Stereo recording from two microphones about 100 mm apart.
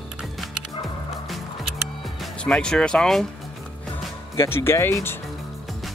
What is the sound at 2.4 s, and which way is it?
Speech, 10° left (ahead or behind).